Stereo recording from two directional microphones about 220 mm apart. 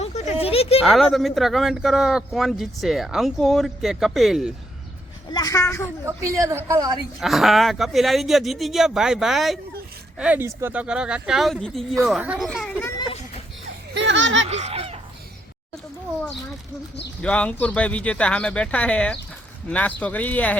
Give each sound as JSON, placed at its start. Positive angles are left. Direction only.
{"t": 0.0, "sound": "a sound", "side_deg": 30}
{"t": 0.8, "sound": "speech", "side_deg": 0}
{"t": 5.3, "sound": "speech", "side_deg": 15}
{"t": 6.1, "sound": "a woman's voice", "side_deg": -15}
{"t": 7.2, "sound": "speech", "side_deg": 0}
{"t": 12.8, "sound": "children playing", "side_deg": 20}
{"t": 13.9, "sound": "a sound", "side_deg": -55}
{"t": 14.5, "sound": "goose", "side_deg": -30}
{"t": 17.2, "sound": "speech", "side_deg": 5}